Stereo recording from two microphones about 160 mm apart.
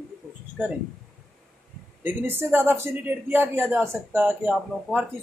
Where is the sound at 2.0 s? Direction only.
15° right (ahead or behind).